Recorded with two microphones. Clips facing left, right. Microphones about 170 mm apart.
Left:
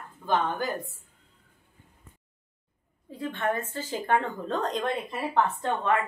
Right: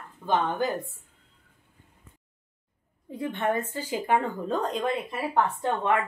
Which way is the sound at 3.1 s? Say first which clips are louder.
Right 2 dB; 20° right (ahead or behind).